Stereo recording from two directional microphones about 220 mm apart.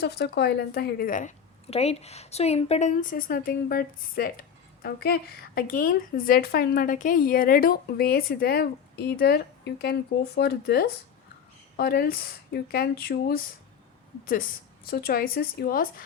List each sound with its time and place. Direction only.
0.0 s a woman's voice: 50° left (ahead or behind)
14.8 s speech: 40° left (ahead or behind)